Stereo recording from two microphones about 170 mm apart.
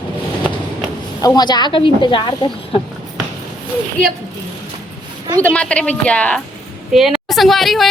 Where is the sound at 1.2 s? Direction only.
25° left (ahead or behind).